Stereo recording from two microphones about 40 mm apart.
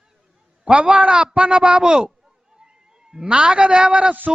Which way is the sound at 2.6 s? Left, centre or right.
Centre.